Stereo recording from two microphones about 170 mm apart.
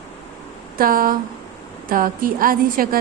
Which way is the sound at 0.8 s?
55° right (ahead or behind).